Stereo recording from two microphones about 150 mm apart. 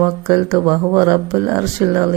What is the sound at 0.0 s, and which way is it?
Speech, 25° right (ahead or behind).